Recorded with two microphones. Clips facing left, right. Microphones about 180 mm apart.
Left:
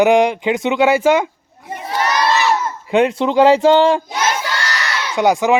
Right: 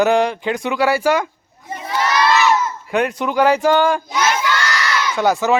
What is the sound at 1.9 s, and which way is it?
Crowd, 35° left (ahead or behind).